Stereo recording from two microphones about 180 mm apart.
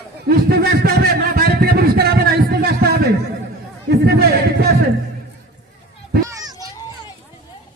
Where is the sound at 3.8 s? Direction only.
60° right (ahead or behind).